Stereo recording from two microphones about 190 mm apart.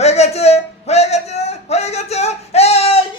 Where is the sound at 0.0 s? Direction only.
35° left (ahead or behind).